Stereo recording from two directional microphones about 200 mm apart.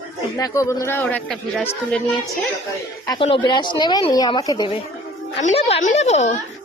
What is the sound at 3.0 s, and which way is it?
A woman's voice, 25° left (ahead or behind).